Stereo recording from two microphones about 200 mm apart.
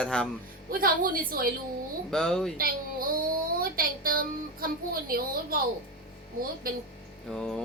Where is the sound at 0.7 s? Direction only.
45° right (ahead or behind).